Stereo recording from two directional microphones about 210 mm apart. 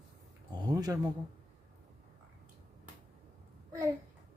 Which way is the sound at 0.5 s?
20° right (ahead or behind).